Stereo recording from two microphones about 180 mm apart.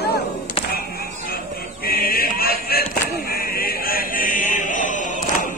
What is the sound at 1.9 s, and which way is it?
Music, 55° left (ahead or behind).